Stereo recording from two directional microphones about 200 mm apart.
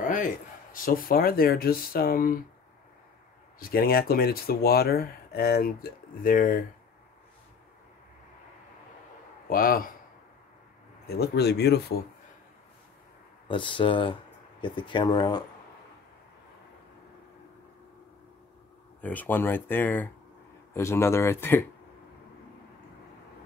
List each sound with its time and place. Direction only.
0.7 s speech: 45° left (ahead or behind)
3.5 s speech: 45° left (ahead or behind)
9.5 s speech: 45° left (ahead or behind)
11.1 s speech: 50° left (ahead or behind)
13.5 s speech: 25° left (ahead or behind)
18.9 s speech: 10° left (ahead or behind)